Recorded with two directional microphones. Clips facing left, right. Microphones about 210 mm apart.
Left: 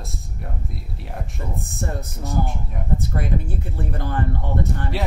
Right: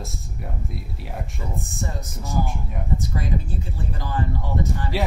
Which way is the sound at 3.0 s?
60° left (ahead or behind).